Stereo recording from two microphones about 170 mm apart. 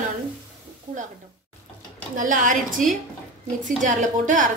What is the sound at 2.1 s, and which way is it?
Speech, 50° right (ahead or behind).